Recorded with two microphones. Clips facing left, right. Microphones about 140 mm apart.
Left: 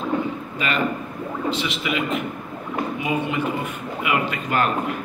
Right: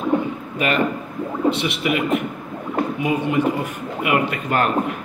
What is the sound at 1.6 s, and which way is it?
Speech, 60° right (ahead or behind).